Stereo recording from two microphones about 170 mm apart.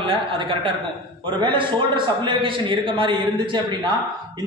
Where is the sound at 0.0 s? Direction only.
30° right (ahead or behind).